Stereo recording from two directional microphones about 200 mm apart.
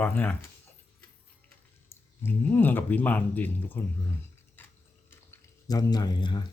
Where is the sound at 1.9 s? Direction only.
10° left (ahead or behind).